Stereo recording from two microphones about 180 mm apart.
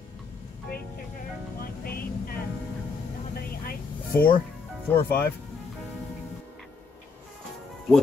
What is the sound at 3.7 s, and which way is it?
Vehicle, 55° left (ahead or behind).